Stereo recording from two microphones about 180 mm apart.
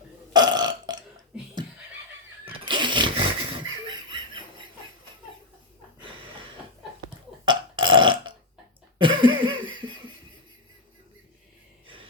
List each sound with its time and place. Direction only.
0.3 s burping: 25° right (ahead or behind)
2.5 s a sound: 25° right (ahead or behind)
7.4 s burping: 25° right (ahead or behind)
9.0 s cough: 30° right (ahead or behind)
9.7 s laughter: 25° right (ahead or behind)